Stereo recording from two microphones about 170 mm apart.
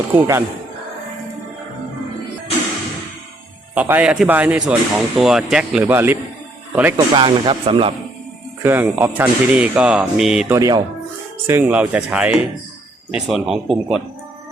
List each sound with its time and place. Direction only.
0.1 s speech: 15° right (ahead or behind)
3.8 s speech: 10° right (ahead or behind)
6.9 s speech: 30° right (ahead or behind)
8.6 s speech: 15° right (ahead or behind)
10.5 s speech: 20° right (ahead or behind); by 14.0 s 5° right (ahead or behind)